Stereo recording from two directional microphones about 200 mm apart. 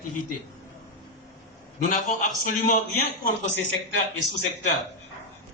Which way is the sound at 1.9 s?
40° left (ahead or behind).